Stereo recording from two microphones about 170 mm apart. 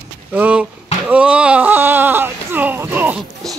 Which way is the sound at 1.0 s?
5° right (ahead or behind).